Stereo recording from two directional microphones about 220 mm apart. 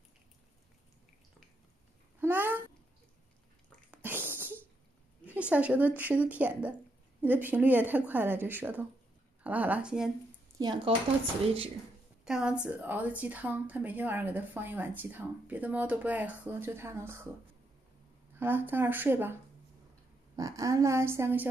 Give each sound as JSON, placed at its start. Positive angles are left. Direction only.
{"t": 2.1, "sound": "babbling", "side_deg": -10}
{"t": 3.9, "sound": "sneeze", "side_deg": -10}
{"t": 5.2, "sound": "a woman's voice", "side_deg": -5}
{"t": 10.6, "sound": "speech", "side_deg": -20}
{"t": 12.3, "sound": "a woman's voice", "side_deg": -5}
{"t": 18.3, "sound": "speech", "side_deg": -10}